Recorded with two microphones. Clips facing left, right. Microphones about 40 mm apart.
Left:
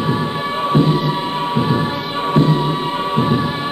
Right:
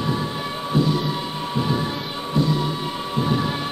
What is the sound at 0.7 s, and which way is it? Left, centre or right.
Music, left.